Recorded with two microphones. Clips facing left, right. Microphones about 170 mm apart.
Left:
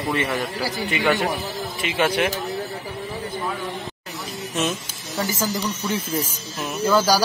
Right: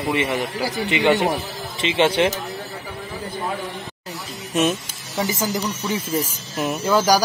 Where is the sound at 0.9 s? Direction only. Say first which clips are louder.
Right 4 dB; 20° right (ahead or behind).